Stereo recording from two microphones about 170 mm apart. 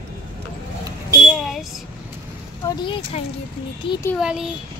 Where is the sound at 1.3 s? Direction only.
Centre (ahead or behind).